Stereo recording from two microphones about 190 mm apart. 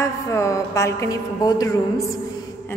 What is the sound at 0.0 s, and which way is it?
A woman's voice, 15° left (ahead or behind).